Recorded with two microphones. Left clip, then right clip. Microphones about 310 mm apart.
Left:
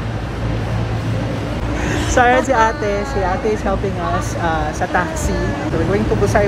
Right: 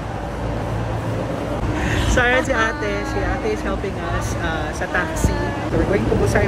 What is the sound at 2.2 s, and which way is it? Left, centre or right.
Speech, centre.